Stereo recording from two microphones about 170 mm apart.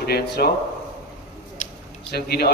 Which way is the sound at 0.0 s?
65° left (ahead or behind).